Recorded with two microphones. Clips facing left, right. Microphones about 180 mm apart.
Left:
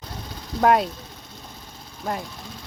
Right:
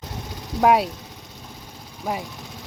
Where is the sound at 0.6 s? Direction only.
5° right (ahead or behind).